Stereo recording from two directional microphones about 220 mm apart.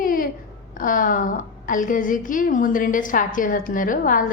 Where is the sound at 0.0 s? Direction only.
40° left (ahead or behind).